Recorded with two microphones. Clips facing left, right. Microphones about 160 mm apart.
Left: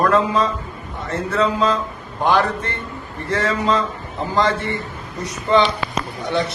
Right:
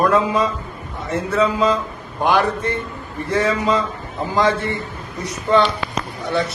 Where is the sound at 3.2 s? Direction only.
15° right (ahead or behind).